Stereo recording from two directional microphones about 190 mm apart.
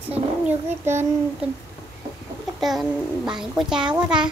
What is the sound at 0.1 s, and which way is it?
A child's voice, 10° right (ahead or behind).